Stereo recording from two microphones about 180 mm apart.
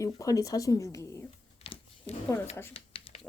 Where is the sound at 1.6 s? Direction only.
30° left (ahead or behind).